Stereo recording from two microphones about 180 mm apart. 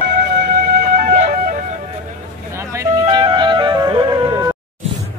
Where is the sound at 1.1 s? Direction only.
45° right (ahead or behind).